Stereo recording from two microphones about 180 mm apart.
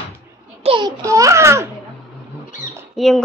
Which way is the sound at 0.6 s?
30° right (ahead or behind).